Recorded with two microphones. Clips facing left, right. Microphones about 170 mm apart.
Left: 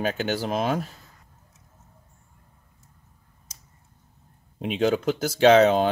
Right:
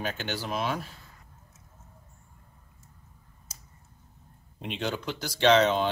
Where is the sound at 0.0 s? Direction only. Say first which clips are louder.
Left 7 dB; 50° left (ahead or behind).